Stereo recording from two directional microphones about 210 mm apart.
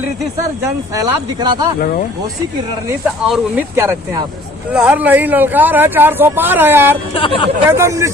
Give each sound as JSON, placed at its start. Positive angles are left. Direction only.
{"t": 0.0, "sound": "speech", "side_deg": -15}
{"t": 3.2, "sound": "speech", "side_deg": -5}
{"t": 7.1, "sound": "speech", "side_deg": 25}
{"t": 7.8, "sound": "speech", "side_deg": -15}